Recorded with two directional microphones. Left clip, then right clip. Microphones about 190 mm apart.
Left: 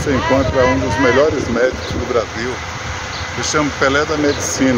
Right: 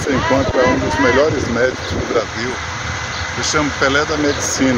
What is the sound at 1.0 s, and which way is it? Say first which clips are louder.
Speech: left 1 dB; 5° right (ahead or behind).